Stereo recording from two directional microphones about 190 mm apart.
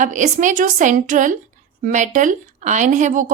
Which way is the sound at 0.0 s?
40° right (ahead or behind).